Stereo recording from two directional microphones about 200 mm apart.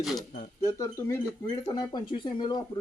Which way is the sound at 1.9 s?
20° left (ahead or behind).